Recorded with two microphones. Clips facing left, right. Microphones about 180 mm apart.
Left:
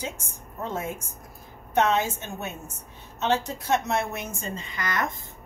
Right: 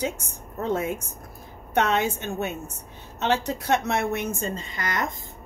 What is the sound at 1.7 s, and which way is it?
Speech, 65° right (ahead or behind).